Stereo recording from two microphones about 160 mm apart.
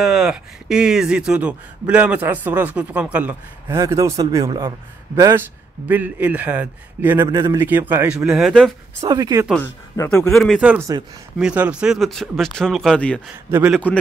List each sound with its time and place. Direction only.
0.0 s a man's voice: centre (ahead or behind)
9.0 s a man's voice: 20° right (ahead or behind)
9.9 s speech: 20° left (ahead or behind)
10.3 s speech: centre (ahead or behind)
13.5 s speech: 10° right (ahead or behind)